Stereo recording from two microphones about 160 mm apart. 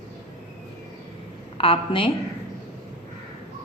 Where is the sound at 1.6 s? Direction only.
35° left (ahead or behind).